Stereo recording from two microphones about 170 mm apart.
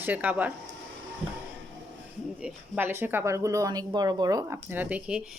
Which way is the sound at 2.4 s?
10° right (ahead or behind).